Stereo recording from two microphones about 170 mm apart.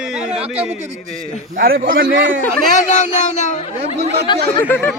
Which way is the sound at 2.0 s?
90° right.